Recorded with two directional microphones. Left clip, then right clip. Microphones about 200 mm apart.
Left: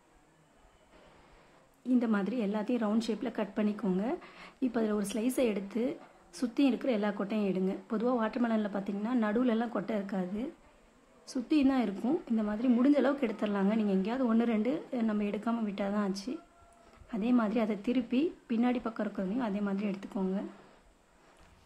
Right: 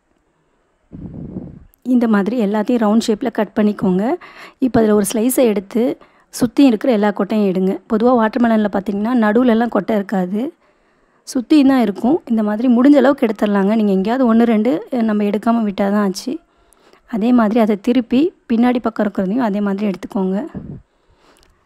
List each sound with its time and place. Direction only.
1.8 s a woman's voice: 45° right (ahead or behind)